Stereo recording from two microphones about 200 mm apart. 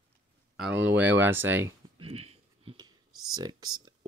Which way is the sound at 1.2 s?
10° right (ahead or behind).